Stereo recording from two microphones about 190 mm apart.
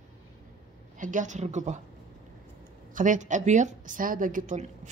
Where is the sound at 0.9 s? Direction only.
40° right (ahead or behind).